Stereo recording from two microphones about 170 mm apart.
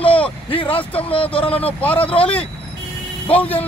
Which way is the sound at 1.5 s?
10° left (ahead or behind).